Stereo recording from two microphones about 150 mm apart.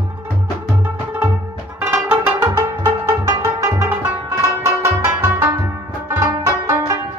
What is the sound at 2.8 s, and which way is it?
Music, 15° right (ahead or behind).